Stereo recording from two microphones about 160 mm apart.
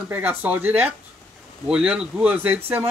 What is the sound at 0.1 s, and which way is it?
Speech, 10° right (ahead or behind).